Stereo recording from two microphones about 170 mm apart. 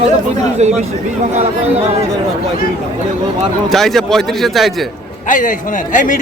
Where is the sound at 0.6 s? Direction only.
40° right (ahead or behind).